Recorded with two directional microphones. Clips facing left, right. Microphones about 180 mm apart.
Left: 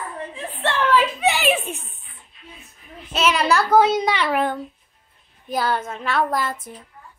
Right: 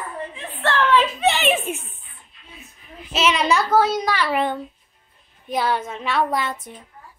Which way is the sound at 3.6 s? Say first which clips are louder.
Left 2 dB; 20° left (ahead or behind).